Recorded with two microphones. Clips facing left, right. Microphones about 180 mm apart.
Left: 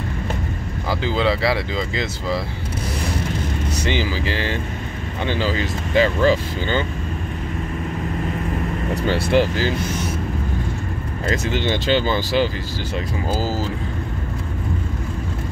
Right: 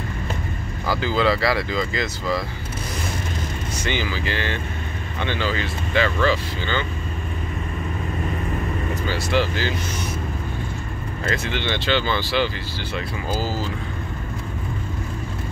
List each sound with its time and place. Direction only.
0.8 s speech: 25° left (ahead or behind)
3.7 s speech: 35° left (ahead or behind)
8.9 s speech: 65° left (ahead or behind)
11.3 s speech: 40° left (ahead or behind)